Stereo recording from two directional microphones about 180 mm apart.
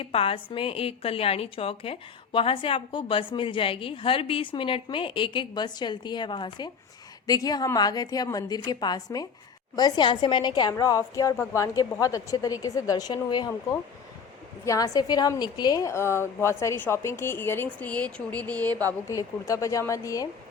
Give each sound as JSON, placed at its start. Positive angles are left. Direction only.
{"t": 0.0, "sound": "a woman's voice", "side_deg": 30}